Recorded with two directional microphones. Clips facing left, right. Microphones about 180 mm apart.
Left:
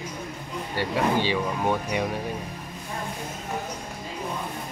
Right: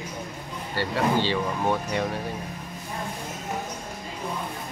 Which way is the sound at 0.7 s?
10° left (ahead or behind).